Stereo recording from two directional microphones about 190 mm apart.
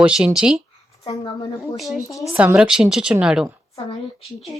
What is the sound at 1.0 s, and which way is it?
A woman's voice, 20° left (ahead or behind).